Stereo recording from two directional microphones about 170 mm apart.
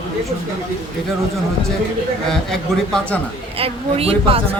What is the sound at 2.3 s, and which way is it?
Speech, 5° left (ahead or behind).